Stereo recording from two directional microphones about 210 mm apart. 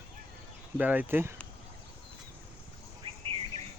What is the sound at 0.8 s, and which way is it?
Speech, 5° right (ahead or behind).